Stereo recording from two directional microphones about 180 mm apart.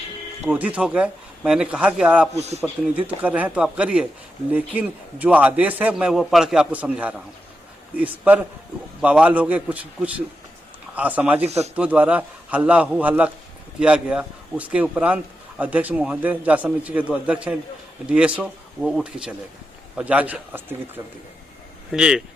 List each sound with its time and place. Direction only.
0.4 s speech: 10° right (ahead or behind)
2.3 s a man's voice: 35° right (ahead or behind)
3.1 s speech: 10° right (ahead or behind)